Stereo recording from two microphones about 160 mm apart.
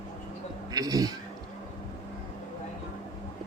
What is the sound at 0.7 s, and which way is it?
Speech, 25° right (ahead or behind).